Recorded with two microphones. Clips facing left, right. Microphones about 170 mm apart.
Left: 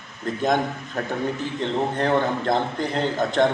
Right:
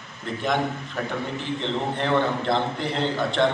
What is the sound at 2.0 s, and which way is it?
A man's voice, 45° left (ahead or behind).